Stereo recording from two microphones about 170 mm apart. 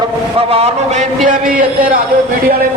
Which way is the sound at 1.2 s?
55° right (ahead or behind).